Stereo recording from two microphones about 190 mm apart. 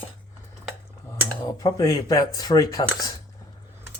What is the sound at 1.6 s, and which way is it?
Speech, 15° left (ahead or behind).